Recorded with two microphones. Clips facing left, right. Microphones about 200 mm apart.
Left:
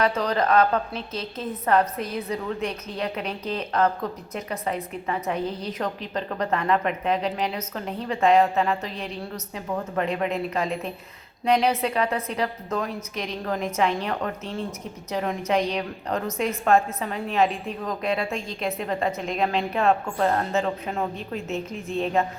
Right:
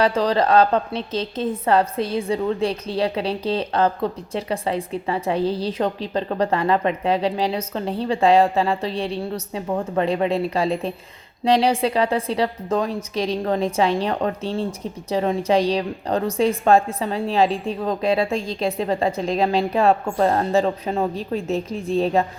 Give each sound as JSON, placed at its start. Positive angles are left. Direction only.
{"t": 0.0, "sound": "a woman's voice", "side_deg": -30}